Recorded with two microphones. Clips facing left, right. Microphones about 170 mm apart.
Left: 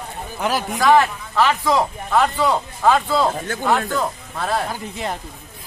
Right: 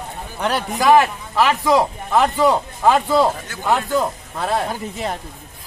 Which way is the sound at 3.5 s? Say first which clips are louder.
Left 7 dB; 50° left (ahead or behind).